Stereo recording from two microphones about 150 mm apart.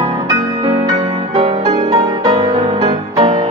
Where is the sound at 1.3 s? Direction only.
45° right (ahead or behind).